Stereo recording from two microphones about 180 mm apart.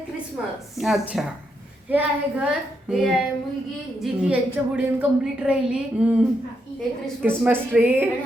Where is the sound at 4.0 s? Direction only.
5° right (ahead or behind).